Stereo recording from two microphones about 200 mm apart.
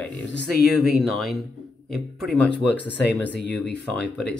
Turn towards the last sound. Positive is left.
turn(degrees=5)  # may be behind; listen again after turning